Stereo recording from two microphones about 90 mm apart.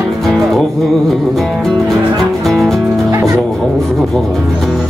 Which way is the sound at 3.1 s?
35° right (ahead or behind).